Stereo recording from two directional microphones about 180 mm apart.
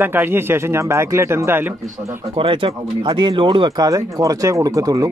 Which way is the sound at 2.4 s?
30° right (ahead or behind).